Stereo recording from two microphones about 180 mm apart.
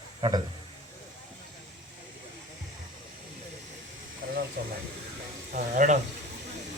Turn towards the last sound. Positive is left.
turn(degrees=-45)  # may be behind; listen again after turning